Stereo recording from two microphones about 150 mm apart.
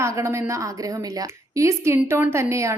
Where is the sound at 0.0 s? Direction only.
20° right (ahead or behind).